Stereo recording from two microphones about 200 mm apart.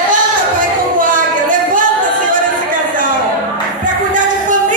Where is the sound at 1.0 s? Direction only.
40° right (ahead or behind).